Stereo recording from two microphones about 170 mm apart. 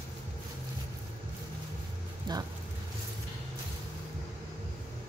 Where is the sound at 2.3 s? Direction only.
25° right (ahead or behind).